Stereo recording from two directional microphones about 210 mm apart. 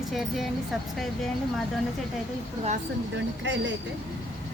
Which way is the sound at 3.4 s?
60° right (ahead or behind).